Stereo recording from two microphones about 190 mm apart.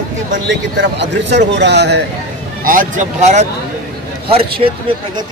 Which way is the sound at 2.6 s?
45° right (ahead or behind).